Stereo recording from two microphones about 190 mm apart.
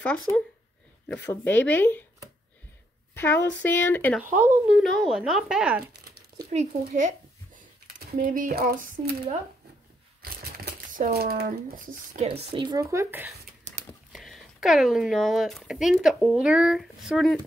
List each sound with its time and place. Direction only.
1.0 s speech: 10° left (ahead or behind)
3.2 s speech: 10° left (ahead or behind)
4.4 s speech: 10° right (ahead or behind)
6.5 s a child's voice: 40° right (ahead or behind)
10.2 s speech: 50° right (ahead or behind)
12.3 s speech: 25° right (ahead or behind); by 13.3 s 10° right (ahead or behind)
14.1 s speech: centre (ahead or behind)